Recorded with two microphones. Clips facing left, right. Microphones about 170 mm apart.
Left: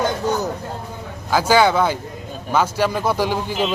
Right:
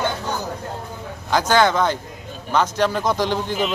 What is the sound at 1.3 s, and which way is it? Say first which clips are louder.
Speech: left 2 dB; 5° left (ahead or behind).